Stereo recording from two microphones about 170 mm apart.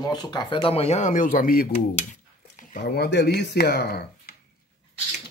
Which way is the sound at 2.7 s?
70° left (ahead or behind).